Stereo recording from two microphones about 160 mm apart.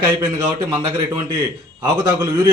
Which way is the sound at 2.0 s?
30° right (ahead or behind).